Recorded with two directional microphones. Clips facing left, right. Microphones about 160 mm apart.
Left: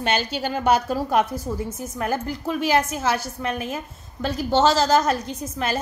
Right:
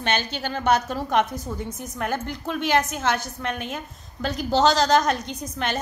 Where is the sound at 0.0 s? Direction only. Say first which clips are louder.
Left 2 dB; 10° left (ahead or behind).